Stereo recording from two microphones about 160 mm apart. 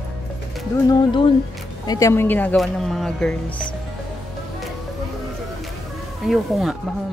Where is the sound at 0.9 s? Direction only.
30° left (ahead or behind).